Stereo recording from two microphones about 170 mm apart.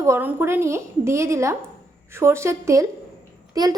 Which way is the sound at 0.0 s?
15° right (ahead or behind).